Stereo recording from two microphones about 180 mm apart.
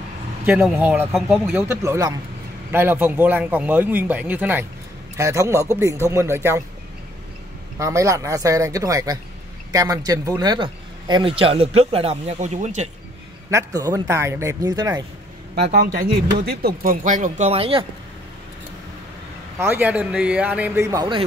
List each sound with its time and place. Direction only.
0.5 s a man's voice: 5° right (ahead or behind)
1.1 s speech: centre (ahead or behind)
1.5 s a man's voice: 15° right (ahead or behind)
7.8 s a man's voice: 15° right (ahead or behind); by 12.8 s 40° right (ahead or behind)
13.5 s a man's voice: 20° right (ahead or behind)
15.5 s a man's voice: 65° right (ahead or behind); by 17.8 s 30° right (ahead or behind)
19.6 s a man's voice: 10° right (ahead or behind)